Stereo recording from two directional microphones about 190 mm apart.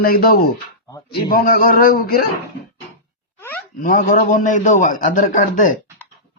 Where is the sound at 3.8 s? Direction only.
45° left (ahead or behind).